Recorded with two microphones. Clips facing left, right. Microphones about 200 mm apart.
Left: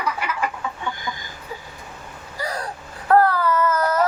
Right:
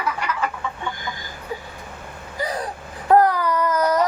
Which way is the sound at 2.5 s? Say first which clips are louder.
Right 2 dB; 15° right (ahead or behind).